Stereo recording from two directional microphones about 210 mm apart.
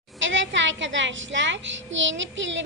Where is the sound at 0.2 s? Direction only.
60° right (ahead or behind).